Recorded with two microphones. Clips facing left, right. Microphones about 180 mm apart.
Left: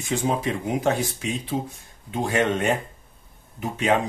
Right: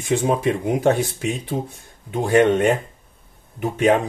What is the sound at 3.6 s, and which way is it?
Speech, 55° right (ahead or behind).